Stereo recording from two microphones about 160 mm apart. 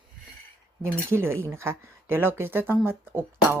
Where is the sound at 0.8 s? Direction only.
15° right (ahead or behind).